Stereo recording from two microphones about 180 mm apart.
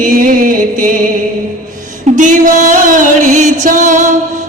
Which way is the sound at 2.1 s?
45° right (ahead or behind).